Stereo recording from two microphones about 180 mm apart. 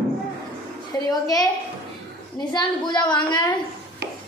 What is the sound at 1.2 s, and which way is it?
Speech, 20° left (ahead or behind).